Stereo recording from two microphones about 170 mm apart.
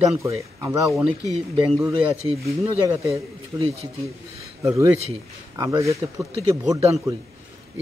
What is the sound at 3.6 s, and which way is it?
Speech, 35° right (ahead or behind).